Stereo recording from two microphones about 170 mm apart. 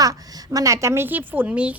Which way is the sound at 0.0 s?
20° right (ahead or behind).